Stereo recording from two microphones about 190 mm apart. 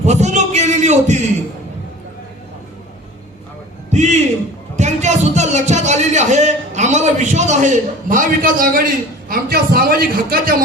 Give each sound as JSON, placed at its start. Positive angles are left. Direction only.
{"t": 0.0, "sound": "a man's voice", "side_deg": -35}
{"t": 3.9, "sound": "a sound", "side_deg": -35}
{"t": 9.3, "sound": "a man's voice", "side_deg": -50}